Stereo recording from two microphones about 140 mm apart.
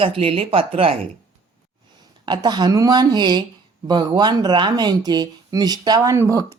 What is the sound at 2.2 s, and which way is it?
A woman's voice, 30° right (ahead or behind).